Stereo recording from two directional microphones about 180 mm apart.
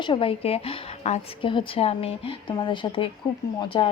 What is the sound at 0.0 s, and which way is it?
A woman's voice, 30° left (ahead or behind).